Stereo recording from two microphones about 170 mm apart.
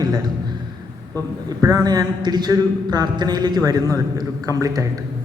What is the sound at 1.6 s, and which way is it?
A man's voice, 20° right (ahead or behind).